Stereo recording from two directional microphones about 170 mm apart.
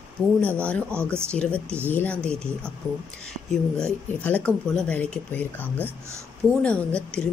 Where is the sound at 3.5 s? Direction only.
5° left (ahead or behind).